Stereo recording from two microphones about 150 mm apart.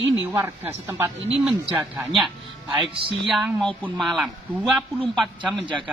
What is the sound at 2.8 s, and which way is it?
Speech, 35° right (ahead or behind).